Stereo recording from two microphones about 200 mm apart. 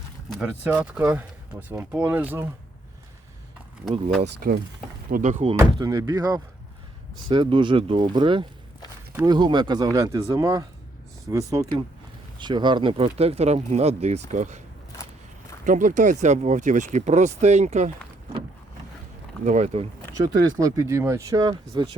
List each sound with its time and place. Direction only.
0.3 s speech: 5° right (ahead or behind)
4.2 s speech: 45° right (ahead or behind)
5.7 s speech: 20° right (ahead or behind); by 14.6 s 35° right (ahead or behind)
15.6 s speech: 40° right (ahead or behind)
19.5 s speech: 35° right (ahead or behind)
20.6 s speech: 15° right (ahead or behind)